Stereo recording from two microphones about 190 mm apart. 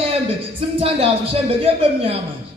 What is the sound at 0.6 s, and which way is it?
A man's voice, 30° right (ahead or behind).